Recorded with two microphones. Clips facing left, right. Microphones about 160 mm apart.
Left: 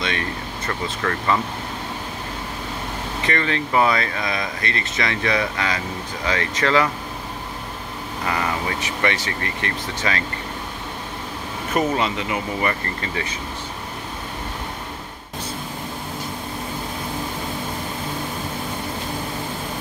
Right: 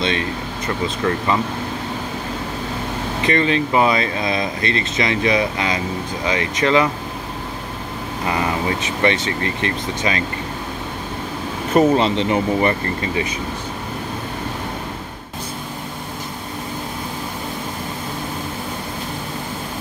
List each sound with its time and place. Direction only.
0.0 s speech: 25° right (ahead or behind)
3.2 s speech: 20° right (ahead or behind)
8.3 s speech: 20° right (ahead or behind)
11.7 s speech: 25° right (ahead or behind)
13.0 s speech: 15° right (ahead or behind)